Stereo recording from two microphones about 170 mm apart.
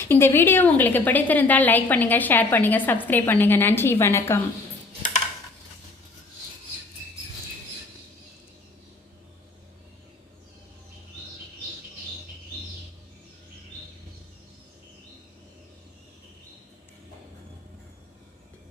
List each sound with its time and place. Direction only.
0.0 s a woman's voice: 15° left (ahead or behind)